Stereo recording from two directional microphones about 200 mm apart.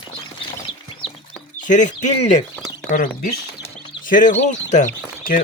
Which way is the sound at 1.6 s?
40° left (ahead or behind).